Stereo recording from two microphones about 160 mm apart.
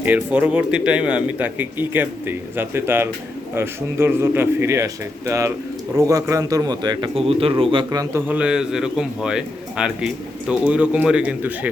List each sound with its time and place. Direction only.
0.0 s a man's voice: 10° right (ahead or behind); by 7.9 s 35° right (ahead or behind)
7.9 s speech: 20° right (ahead or behind)
8.3 s a man's voice: 5° right (ahead or behind)